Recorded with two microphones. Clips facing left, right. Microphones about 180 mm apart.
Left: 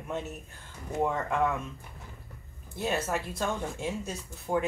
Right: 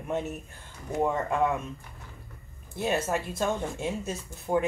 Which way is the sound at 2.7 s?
15° right (ahead or behind).